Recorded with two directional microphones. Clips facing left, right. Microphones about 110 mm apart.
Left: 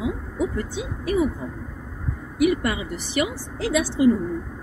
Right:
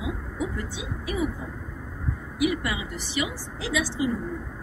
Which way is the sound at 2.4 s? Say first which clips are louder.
Left 5 dB; 50° left (ahead or behind).